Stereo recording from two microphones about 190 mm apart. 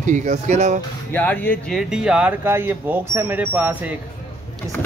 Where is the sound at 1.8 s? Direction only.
5° right (ahead or behind).